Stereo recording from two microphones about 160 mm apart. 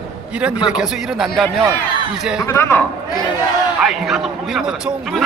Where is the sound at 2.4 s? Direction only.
15° left (ahead or behind).